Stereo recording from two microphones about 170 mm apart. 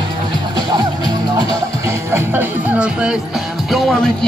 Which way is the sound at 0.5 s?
25° right (ahead or behind).